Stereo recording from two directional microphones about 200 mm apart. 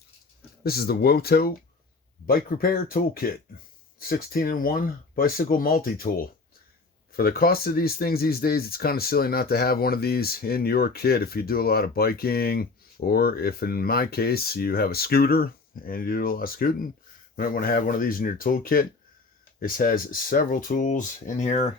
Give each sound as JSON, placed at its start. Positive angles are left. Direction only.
{"t": 0.6, "sound": "speech", "side_deg": 50}